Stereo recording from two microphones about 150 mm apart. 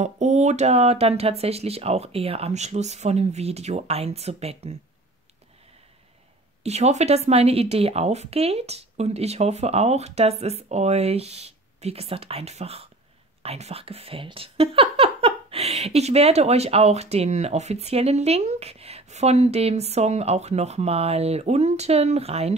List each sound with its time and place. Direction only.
0.0 s speech: 50° right (ahead or behind)
6.6 s speech: 45° right (ahead or behind)